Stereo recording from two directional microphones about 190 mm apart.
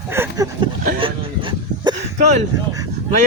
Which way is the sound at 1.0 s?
25° right (ahead or behind).